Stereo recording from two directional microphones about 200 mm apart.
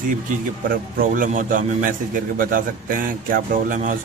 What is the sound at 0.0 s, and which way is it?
A man's voice, 45° right (ahead or behind).